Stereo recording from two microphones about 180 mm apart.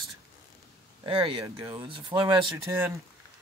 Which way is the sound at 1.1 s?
30° right (ahead or behind).